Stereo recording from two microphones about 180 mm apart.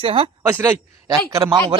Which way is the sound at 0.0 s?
30° right (ahead or behind).